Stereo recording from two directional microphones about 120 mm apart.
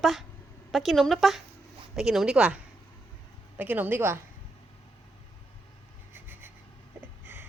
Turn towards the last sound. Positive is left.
turn(degrees=-15)  # may be behind; listen again after turning